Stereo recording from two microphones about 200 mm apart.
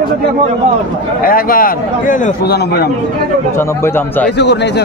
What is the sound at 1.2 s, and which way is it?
A man's voice, 45° left (ahead or behind).